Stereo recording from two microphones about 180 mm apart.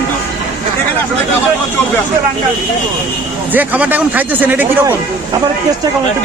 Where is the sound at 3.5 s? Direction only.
10° right (ahead or behind).